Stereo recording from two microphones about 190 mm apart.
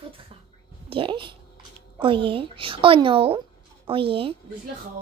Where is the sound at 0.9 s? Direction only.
25° right (ahead or behind).